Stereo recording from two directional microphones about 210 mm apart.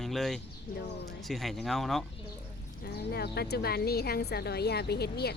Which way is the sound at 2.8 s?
50° left (ahead or behind).